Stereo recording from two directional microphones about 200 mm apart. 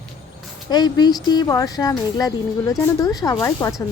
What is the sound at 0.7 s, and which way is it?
A woman's voice, 20° left (ahead or behind).